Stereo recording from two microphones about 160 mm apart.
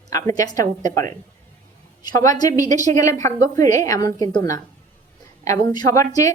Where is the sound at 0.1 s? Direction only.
20° left (ahead or behind).